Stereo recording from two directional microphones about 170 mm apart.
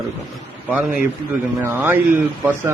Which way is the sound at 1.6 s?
15° right (ahead or behind).